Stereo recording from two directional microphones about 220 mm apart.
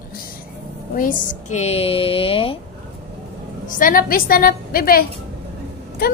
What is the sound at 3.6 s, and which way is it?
A woman's voice, 35° left (ahead or behind).